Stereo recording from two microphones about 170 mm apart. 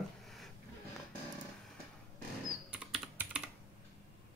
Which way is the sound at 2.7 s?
5° right (ahead or behind).